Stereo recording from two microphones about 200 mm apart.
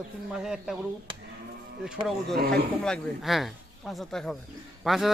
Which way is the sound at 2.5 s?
5° left (ahead or behind).